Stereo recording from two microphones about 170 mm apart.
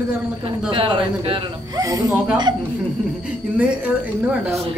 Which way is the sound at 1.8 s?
20° right (ahead or behind).